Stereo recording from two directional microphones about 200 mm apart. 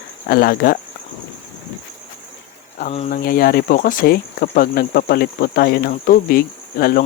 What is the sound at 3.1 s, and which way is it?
Speech, 45° left (ahead or behind).